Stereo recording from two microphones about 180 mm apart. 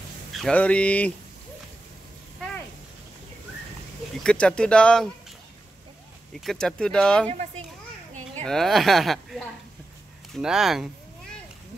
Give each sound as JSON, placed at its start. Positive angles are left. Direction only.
{"t": 0.3, "sound": "speech", "side_deg": 5}
{"t": 4.2, "sound": "speech", "side_deg": 5}
{"t": 6.3, "sound": "speech", "side_deg": 0}
{"t": 7.2, "sound": "a child's voice", "side_deg": -35}
{"t": 8.5, "sound": "speech", "side_deg": 0}